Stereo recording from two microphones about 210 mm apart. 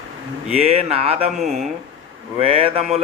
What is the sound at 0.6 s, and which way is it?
Speech, 30° right (ahead or behind).